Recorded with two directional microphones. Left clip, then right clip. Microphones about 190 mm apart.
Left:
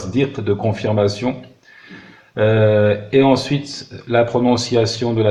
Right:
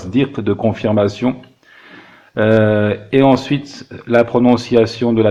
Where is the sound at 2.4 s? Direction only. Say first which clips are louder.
Right 1 dB; 40° right (ahead or behind).